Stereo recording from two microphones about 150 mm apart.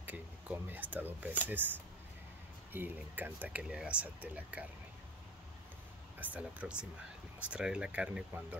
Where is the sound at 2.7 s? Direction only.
10° right (ahead or behind).